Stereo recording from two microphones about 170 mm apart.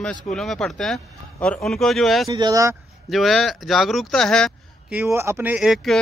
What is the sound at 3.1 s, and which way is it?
Speech, centre (ahead or behind).